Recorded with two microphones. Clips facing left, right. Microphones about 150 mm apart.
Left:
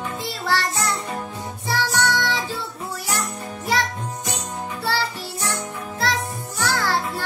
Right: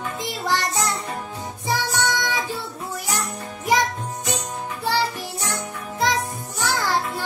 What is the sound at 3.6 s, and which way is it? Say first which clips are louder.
Music: right 3 dB; 15° right (ahead or behind).